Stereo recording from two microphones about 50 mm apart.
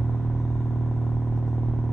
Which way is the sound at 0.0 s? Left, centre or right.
Centre.